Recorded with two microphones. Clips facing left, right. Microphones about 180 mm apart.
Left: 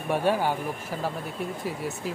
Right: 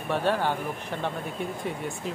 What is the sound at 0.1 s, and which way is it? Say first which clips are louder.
Speech: left 1 dB; 10° left (ahead or behind).